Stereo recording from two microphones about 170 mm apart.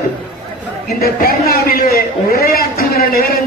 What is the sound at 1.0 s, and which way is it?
A man's voice, 60° left (ahead or behind).